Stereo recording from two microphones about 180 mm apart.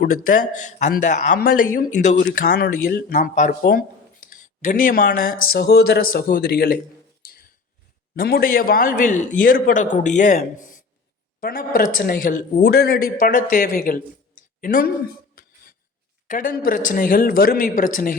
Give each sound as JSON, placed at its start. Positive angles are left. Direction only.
{"t": 0.0, "sound": "speech", "side_deg": 45}
{"t": 1.4, "sound": "speech", "side_deg": 55}
{"t": 2.2, "sound": "speech", "side_deg": 55}
{"t": 3.1, "sound": "speech", "side_deg": 45}
{"t": 8.1, "sound": "speech", "side_deg": 55}
{"t": 15.4, "sound": "a sound", "side_deg": 50}
{"t": 16.2, "sound": "speech", "side_deg": 50}